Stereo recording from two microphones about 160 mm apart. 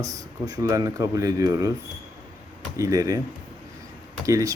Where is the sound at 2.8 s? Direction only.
20° right (ahead or behind).